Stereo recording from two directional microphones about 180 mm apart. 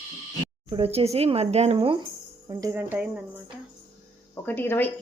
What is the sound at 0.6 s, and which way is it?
Speech, 30° right (ahead or behind).